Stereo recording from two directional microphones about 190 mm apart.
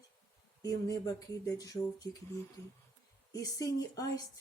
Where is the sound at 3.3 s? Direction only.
20° left (ahead or behind).